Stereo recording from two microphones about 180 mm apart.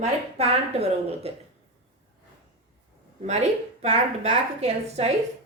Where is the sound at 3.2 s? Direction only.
40° right (ahead or behind).